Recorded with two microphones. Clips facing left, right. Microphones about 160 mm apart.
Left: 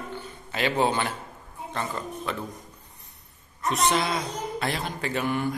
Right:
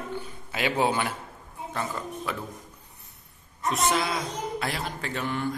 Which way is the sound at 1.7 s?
5° right (ahead or behind).